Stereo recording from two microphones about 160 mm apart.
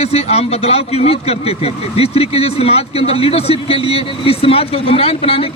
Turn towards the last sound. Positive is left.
turn(degrees=35)  # may be behind; listen again after turning